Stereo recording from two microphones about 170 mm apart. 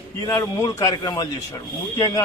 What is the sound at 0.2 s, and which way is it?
A man's voice, 20° left (ahead or behind).